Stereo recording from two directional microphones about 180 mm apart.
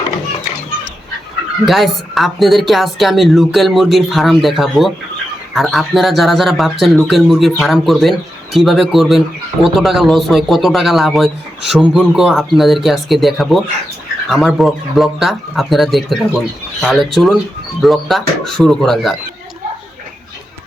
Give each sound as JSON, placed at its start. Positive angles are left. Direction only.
{"t": 1.6, "sound": "speech", "side_deg": 0}